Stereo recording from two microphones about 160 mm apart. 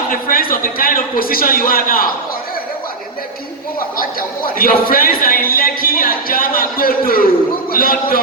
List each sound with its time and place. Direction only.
0.1 s a man's voice: 60° left (ahead or behind)
3.8 s a man's voice: 65° left (ahead or behind)